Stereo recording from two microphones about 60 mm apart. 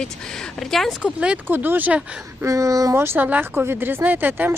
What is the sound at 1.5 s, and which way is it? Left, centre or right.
Speech, right.